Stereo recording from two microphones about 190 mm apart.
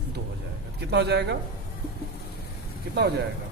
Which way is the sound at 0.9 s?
60° right (ahead or behind).